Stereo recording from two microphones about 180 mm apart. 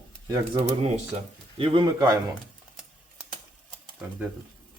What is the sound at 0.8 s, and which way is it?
Speech, 35° right (ahead or behind).